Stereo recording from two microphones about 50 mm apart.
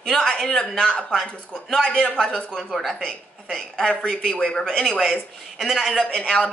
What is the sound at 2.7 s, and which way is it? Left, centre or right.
Speech, centre.